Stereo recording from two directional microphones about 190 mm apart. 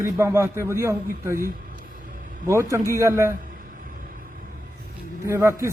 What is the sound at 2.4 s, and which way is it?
Speech, 15° right (ahead or behind).